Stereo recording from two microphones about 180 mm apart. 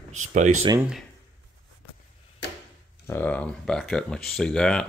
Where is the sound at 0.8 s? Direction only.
5° right (ahead or behind).